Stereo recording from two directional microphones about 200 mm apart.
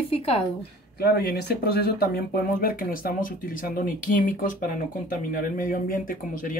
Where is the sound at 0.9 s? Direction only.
50° left (ahead or behind).